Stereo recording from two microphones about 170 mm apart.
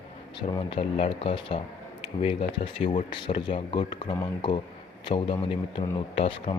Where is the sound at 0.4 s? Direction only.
30° left (ahead or behind).